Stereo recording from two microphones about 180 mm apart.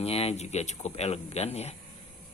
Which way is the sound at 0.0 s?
35° left (ahead or behind).